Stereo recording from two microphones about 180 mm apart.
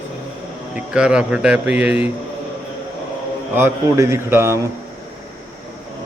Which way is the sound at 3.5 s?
15° right (ahead or behind).